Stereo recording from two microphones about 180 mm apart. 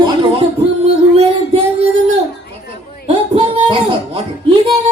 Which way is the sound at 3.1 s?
30° right (ahead or behind).